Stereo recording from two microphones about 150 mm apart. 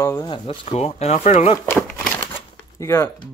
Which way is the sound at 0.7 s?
45° left (ahead or behind).